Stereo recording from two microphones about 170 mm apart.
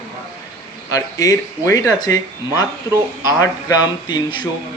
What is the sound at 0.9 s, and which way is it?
Speech, 20° left (ahead or behind).